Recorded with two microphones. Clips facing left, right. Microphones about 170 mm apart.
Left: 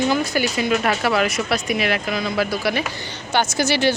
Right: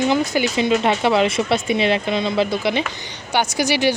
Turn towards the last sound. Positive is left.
turn(degrees=-15)  # may be behind; listen again after turning